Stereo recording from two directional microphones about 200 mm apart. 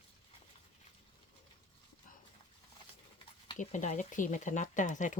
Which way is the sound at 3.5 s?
35° left (ahead or behind).